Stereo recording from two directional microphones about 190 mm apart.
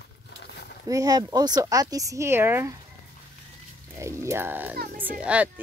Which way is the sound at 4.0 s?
15° right (ahead or behind).